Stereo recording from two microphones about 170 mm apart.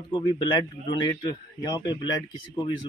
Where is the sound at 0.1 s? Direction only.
25° left (ahead or behind).